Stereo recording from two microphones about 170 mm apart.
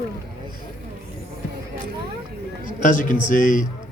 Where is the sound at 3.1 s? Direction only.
50° left (ahead or behind).